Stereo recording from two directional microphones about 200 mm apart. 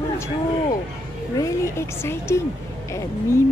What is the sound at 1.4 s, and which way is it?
A woman's voice, 15° left (ahead or behind).